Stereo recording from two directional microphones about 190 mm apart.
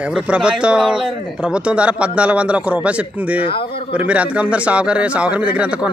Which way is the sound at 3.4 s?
30° left (ahead or behind).